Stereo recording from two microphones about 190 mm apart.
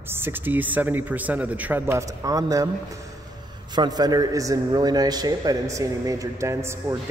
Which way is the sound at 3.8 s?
20° right (ahead or behind).